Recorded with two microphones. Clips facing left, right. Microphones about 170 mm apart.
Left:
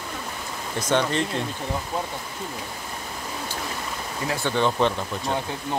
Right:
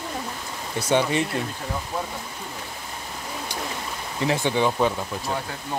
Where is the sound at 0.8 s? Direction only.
10° right (ahead or behind).